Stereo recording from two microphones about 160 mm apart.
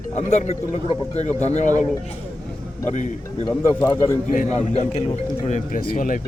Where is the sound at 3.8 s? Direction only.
15° left (ahead or behind).